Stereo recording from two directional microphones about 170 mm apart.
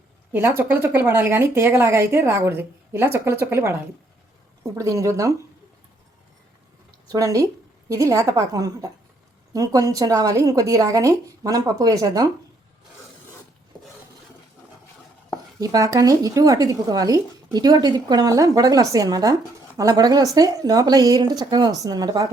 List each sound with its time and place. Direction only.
0.3 s speech: 10° right (ahead or behind)
7.1 s speech: 20° right (ahead or behind)
15.6 s speech: 20° right (ahead or behind)